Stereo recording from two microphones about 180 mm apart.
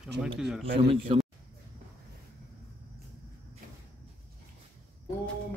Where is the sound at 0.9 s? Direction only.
30° right (ahead or behind).